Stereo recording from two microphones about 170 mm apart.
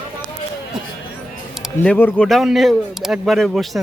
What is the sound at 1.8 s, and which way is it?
Speech, 10° left (ahead or behind).